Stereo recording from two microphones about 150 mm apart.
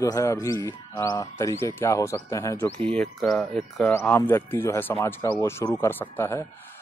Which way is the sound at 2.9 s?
5° left (ahead or behind).